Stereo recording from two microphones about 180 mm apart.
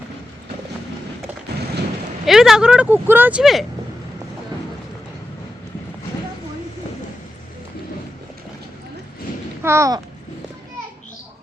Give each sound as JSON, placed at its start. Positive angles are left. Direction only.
{"t": 2.2, "sound": "speech", "side_deg": 0}
{"t": 9.6, "sound": "speech", "side_deg": -15}